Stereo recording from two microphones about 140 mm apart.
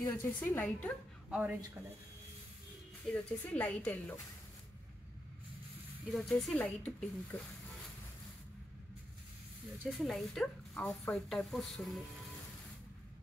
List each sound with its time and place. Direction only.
0.0 s speech: 20° left (ahead or behind)
3.1 s speech: 10° left (ahead or behind)
6.0 s speech: centre (ahead or behind)
9.8 s speech: centre (ahead or behind)